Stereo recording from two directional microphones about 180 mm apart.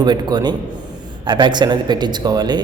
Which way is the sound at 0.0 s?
25° right (ahead or behind).